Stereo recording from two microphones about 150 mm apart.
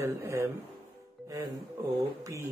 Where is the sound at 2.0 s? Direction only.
20° right (ahead or behind).